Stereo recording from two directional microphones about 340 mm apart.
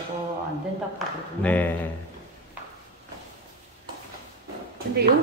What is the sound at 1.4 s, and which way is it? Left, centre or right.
Speech, centre.